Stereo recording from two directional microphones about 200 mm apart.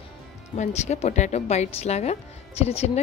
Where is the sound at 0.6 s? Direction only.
35° left (ahead or behind).